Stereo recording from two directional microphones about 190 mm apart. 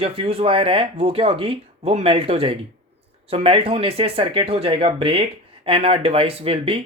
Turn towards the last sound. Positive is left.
turn(degrees=-30)  # may be behind; listen again after turning